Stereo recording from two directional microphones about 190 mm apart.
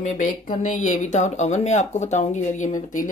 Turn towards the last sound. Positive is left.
turn(degrees=45)  # may be behind; listen again after turning